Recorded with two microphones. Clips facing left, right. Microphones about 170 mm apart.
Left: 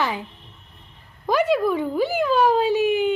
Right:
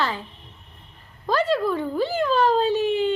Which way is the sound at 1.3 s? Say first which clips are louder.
Left 2 dB; 15° left (ahead or behind).